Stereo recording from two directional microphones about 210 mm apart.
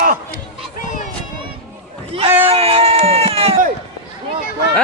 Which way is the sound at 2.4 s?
25° right (ahead or behind).